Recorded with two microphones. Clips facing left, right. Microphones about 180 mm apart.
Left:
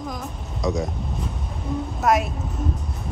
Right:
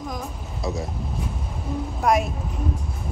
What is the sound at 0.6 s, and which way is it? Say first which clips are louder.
Speech: left 4 dB; 20° left (ahead or behind).